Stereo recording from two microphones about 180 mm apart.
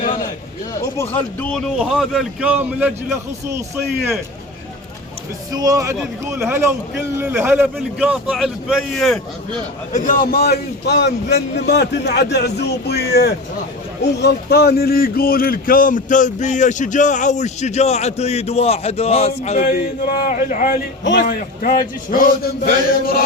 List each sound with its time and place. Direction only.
0.9 s speech: 10° left (ahead or behind); by 2.9 s 10° right (ahead or behind)
5.5 s a man's voice: 20° right (ahead or behind); by 9.1 s centre (ahead or behind)
9.9 s a man's voice: 50° left (ahead or behind)
19.6 s speech: 55° left (ahead or behind)
21.0 s a man's voice: 80° left
21.2 s speech: 55° left (ahead or behind)